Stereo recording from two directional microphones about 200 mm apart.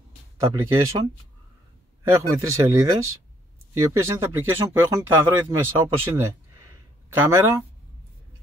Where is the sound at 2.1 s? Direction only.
15° right (ahead or behind).